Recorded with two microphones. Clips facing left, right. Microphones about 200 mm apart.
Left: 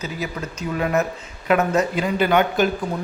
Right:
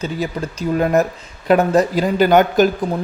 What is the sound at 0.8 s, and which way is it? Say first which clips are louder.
Speech: right 5 dB; 40° right (ahead or behind).